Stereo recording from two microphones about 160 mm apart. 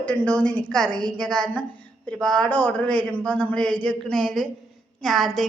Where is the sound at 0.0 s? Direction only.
10° left (ahead or behind).